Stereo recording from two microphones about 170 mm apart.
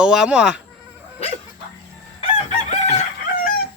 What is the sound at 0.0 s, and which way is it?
Speech, 5° right (ahead or behind).